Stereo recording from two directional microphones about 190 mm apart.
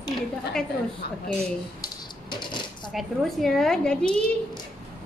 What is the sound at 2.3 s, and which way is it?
Coin, 25° left (ahead or behind).